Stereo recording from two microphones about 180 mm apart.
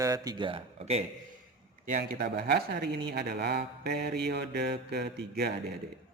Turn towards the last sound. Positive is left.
turn(degrees=-65)  # may be behind; listen again after turning